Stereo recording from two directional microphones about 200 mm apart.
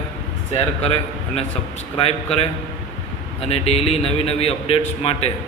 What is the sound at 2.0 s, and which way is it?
A man's voice, 30° left (ahead or behind).